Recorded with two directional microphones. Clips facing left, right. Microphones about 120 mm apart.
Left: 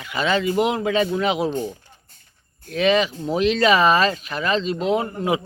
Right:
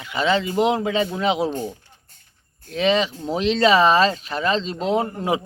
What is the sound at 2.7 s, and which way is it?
A man's voice, 25° right (ahead or behind).